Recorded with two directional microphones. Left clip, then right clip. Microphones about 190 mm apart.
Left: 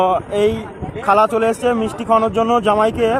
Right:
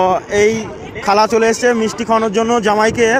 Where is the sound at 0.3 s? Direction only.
10° right (ahead or behind).